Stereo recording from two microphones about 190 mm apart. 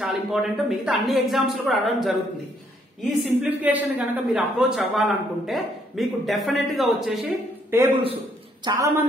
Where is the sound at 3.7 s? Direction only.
10° right (ahead or behind).